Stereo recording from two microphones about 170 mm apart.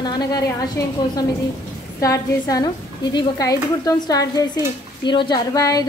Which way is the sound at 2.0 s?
20° left (ahead or behind).